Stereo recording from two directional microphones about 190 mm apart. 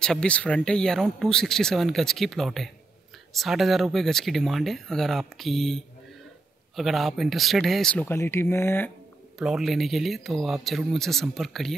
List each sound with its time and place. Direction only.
0.0 s speech: 5° left (ahead or behind)
9.4 s speech: centre (ahead or behind)